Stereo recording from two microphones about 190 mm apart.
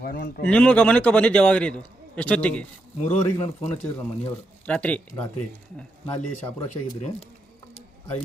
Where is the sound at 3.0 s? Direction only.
35° left (ahead or behind).